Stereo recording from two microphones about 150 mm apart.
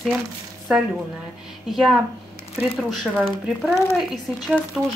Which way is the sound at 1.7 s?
Centre (ahead or behind).